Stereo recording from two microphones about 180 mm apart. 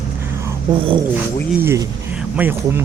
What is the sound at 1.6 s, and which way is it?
Speech, 15° right (ahead or behind).